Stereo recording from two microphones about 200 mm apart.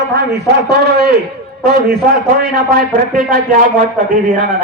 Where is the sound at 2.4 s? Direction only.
50° right (ahead or behind).